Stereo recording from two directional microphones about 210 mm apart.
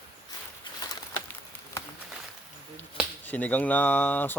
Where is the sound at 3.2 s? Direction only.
5° left (ahead or behind).